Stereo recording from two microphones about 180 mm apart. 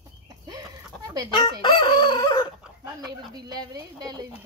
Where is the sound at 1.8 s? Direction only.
25° left (ahead or behind).